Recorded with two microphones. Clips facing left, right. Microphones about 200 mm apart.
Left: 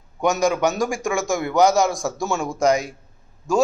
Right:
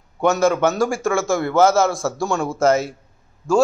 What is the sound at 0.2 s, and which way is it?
A man's voice, 15° left (ahead or behind).